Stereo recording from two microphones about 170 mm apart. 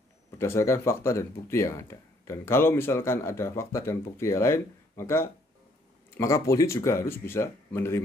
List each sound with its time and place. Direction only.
0.4 s speech: 15° left (ahead or behind)